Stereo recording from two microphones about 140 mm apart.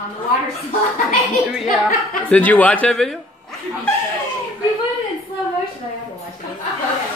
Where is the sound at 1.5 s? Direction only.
Centre (ahead or behind).